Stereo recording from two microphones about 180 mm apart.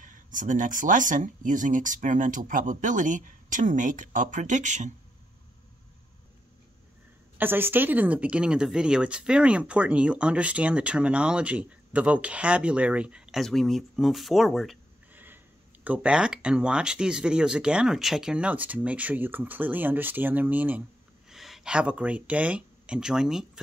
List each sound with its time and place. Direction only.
0.0 s speech: 45° right (ahead or behind)
7.3 s speech: 10° right (ahead or behind)
15.1 s speech: 10° right (ahead or behind)